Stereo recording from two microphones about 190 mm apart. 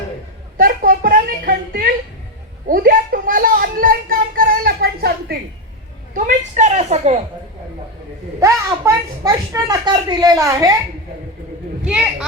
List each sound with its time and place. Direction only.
0.5 s a sound: 45° right (ahead or behind)
6.1 s a woman's voice: 40° right (ahead or behind)
8.4 s speech: 15° right (ahead or behind)